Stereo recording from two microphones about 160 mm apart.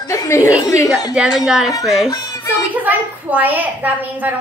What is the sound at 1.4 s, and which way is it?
Speech, centre (ahead or behind).